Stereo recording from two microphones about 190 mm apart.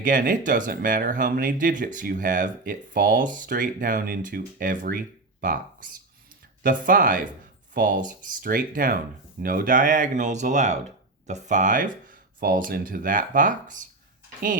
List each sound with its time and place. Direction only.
0.0 s speech: 45° right (ahead or behind)
6.6 s speech: 45° right (ahead or behind)